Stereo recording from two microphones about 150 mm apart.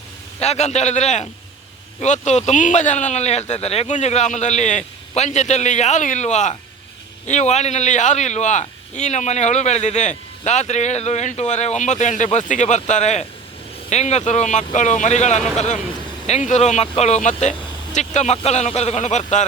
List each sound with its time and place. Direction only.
0.3 s a man's voice: 45° left (ahead or behind)